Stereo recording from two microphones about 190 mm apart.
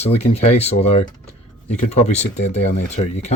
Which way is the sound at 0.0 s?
35° left (ahead or behind).